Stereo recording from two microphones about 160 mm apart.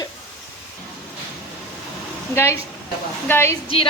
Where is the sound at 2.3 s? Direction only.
15° left (ahead or behind).